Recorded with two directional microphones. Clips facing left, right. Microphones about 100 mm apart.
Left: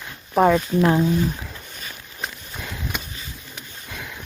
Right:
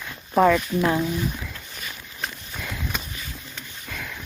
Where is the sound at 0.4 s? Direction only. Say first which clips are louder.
Left 3 dB; 30° left (ahead or behind).